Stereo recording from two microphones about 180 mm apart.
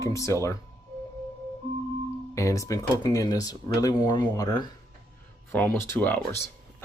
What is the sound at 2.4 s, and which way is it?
Speech, 15° left (ahead or behind).